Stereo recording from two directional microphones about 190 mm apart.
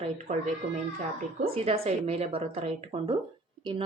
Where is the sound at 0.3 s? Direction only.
40° right (ahead or behind).